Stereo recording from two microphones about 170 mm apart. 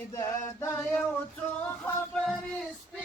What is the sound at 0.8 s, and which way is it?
Male singing, 5° left (ahead or behind).